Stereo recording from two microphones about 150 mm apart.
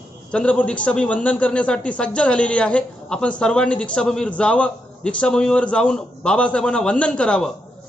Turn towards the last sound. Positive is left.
turn(degrees=5)  # may be behind; listen again after turning